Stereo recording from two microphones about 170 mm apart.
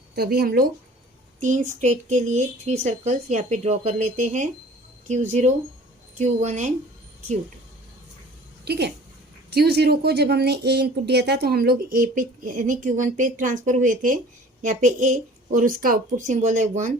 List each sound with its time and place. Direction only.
0.2 s speech: 65° right (ahead or behind)
1.4 s speech: 45° right (ahead or behind)
8.6 s a woman's voice: 75° right (ahead or behind); by 16.9 s 45° right (ahead or behind)